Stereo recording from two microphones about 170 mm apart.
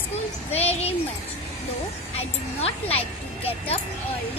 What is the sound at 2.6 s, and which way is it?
Speech, 35° left (ahead or behind).